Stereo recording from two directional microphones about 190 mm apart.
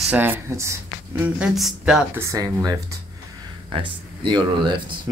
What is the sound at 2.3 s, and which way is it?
Speech, 20° right (ahead or behind).